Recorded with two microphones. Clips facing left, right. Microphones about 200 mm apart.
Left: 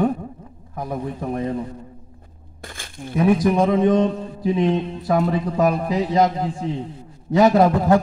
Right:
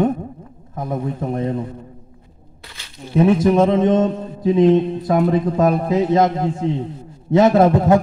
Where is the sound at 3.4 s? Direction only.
25° right (ahead or behind).